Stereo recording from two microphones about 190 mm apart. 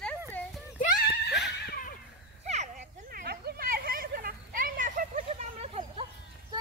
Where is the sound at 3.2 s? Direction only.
55° right (ahead or behind).